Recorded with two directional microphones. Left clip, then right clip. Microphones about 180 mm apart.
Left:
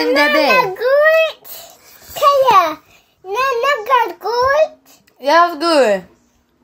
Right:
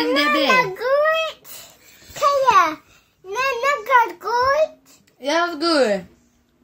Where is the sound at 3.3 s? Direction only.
25° right (ahead or behind).